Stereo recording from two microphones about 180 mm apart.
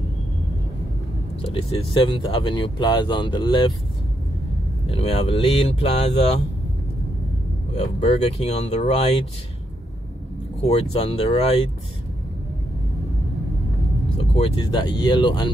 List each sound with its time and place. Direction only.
1.4 s speech: 30° left (ahead or behind)
4.8 s speech: 35° left (ahead or behind)
7.7 s speech: 35° left (ahead or behind)
10.6 s speech: 35° left (ahead or behind)
14.3 s speech: 30° left (ahead or behind)